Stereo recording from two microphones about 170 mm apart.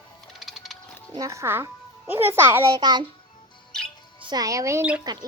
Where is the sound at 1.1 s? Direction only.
20° right (ahead or behind).